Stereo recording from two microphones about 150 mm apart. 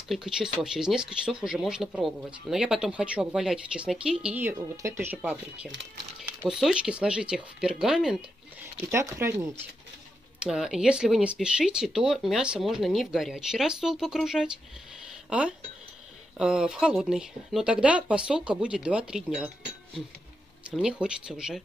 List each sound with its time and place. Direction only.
0.1 s speech: centre (ahead or behind)
8.9 s speech: 15° right (ahead or behind)
10.4 s speech: 5° right (ahead or behind)
15.0 s a sound: 5° right (ahead or behind)
16.3 s speech: 5° right (ahead or behind)
20.7 s speech: 5° right (ahead or behind)